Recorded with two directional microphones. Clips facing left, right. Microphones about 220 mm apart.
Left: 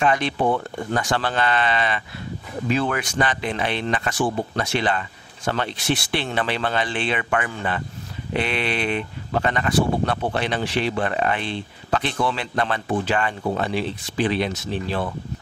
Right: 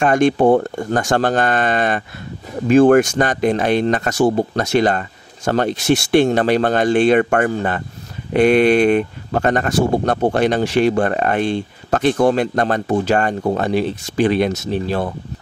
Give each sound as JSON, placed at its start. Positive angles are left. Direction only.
{"t": 0.0, "sound": "speech", "side_deg": -45}